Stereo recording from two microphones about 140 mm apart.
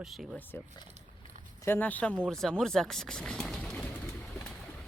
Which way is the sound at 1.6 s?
15° left (ahead or behind).